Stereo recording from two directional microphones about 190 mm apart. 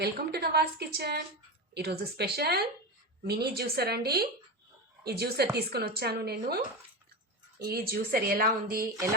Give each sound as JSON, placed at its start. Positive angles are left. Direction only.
{"t": 0.0, "sound": "a woman's voice", "side_deg": -60}
{"t": 7.6, "sound": "speech", "side_deg": -55}